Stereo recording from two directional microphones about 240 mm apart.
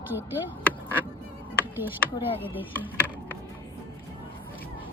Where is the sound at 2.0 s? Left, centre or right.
Centre.